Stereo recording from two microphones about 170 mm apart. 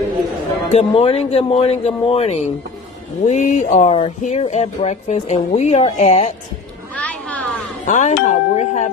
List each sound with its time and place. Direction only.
0.7 s speech: 35° left (ahead or behind)
7.0 s a sound: 10° left (ahead or behind)
7.8 s speech: 45° left (ahead or behind)